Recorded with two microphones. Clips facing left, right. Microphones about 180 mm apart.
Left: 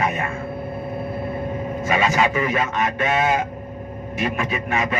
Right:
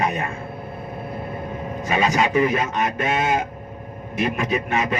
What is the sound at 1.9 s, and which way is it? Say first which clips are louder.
Speech: right 1 dB; 35° right (ahead or behind).